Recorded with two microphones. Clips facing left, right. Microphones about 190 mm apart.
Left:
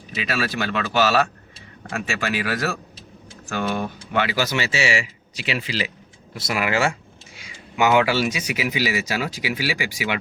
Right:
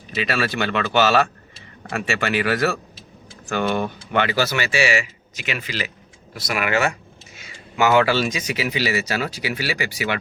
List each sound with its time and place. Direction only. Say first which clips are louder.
0.1 s speech: right 2 dB; centre (ahead or behind)
4.5 s speech: right 2 dB; 25° left (ahead or behind)
7.3 s speech: right 1 dB; 15° left (ahead or behind)